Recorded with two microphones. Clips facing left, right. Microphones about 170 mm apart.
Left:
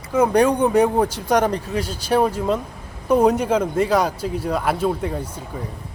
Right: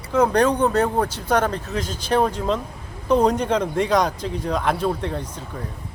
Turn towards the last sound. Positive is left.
turn(degrees=10)  # may be behind; listen again after turning